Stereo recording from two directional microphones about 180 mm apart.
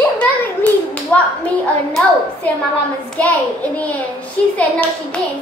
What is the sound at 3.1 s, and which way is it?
A child's voice, 10° left (ahead or behind).